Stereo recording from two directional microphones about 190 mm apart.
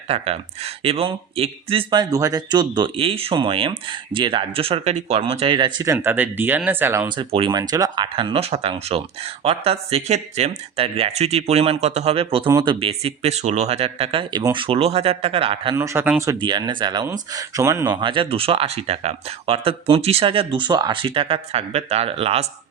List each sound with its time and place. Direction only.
0.1 s speech: 30° right (ahead or behind); by 7.1 s 10° right (ahead or behind)
7.2 s speech: 25° right (ahead or behind)
12.5 s speech: 20° right (ahead or behind)
12.8 s speech: 30° right (ahead or behind)
15.7 s speech: 15° right (ahead or behind); by 22.4 s 30° right (ahead or behind)